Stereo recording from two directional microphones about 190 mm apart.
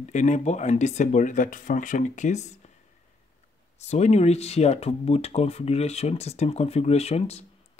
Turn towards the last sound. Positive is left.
turn(degrees=35)  # may be behind; listen again after turning